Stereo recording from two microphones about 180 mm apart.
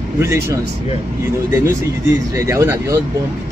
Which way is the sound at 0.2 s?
15° right (ahead or behind).